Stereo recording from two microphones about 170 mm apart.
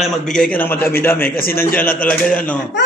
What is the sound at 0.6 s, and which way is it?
Speech, 10° left (ahead or behind).